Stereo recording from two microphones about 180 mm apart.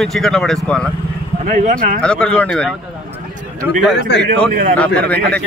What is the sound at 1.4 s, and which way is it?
Speech, 45° right (ahead or behind).